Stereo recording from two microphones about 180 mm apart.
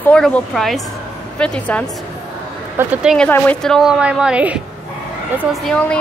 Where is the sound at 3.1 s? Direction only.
5° left (ahead or behind).